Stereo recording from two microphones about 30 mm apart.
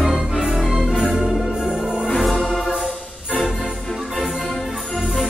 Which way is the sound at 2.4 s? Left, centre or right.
Centre.